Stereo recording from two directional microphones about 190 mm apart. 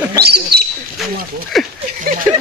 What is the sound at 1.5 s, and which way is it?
Speech, centre (ahead or behind).